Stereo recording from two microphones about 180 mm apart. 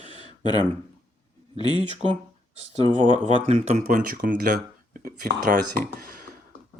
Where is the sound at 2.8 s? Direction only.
25° left (ahead or behind).